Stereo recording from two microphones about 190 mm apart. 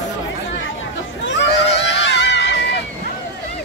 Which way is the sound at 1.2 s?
70° left (ahead or behind).